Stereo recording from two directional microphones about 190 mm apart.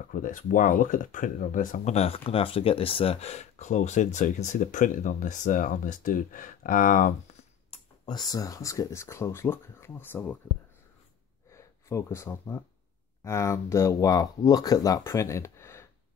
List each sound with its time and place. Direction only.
0.1 s speech: 45° left (ahead or behind)
7.7 s speech: 25° left (ahead or behind)
11.5 s speech: 15° left (ahead or behind)